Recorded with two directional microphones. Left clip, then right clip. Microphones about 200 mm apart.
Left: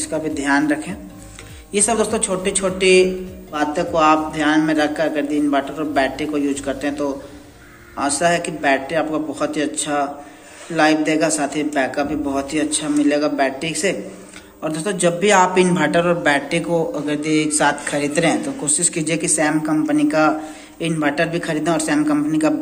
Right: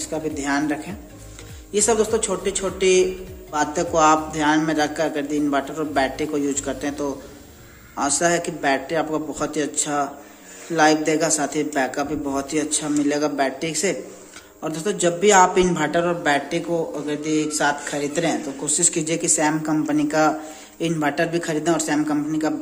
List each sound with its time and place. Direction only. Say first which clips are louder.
0.0 s a man's voice: left 4 dB; 15° right (ahead or behind)
3.5 s a man's voice: left 2 dB; 25° right (ahead or behind)